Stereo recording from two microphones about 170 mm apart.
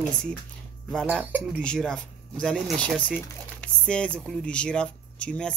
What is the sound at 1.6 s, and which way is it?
Speech, 5° left (ahead or behind).